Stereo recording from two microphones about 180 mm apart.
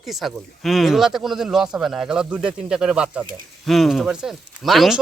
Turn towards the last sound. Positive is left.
turn(degrees=0)  # may be behind; listen again after turning